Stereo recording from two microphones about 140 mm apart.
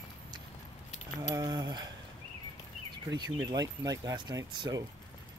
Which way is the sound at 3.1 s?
30° right (ahead or behind).